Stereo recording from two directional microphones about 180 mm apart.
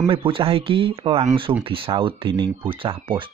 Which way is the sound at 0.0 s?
30° right (ahead or behind).